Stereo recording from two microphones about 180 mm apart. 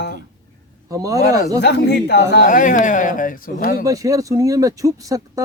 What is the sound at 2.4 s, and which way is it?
Speech, 45° left (ahead or behind).